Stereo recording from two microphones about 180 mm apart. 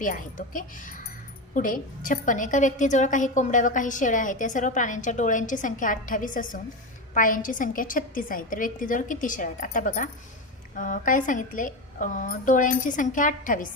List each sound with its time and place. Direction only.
0.0 s a woman's voice: 50° left (ahead or behind)